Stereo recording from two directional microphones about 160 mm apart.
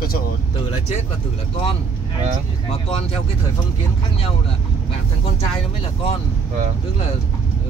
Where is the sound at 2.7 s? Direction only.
40° left (ahead or behind).